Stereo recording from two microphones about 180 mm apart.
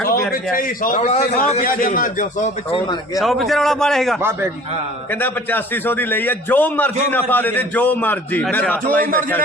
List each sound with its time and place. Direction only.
0.5 s a man's voice: 45° left (ahead or behind)
3.2 s a man's voice: centre (ahead or behind)
5.2 s a man's voice: 10° left (ahead or behind)